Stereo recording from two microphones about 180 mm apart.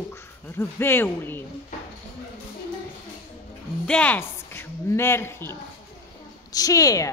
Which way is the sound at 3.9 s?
5° left (ahead or behind).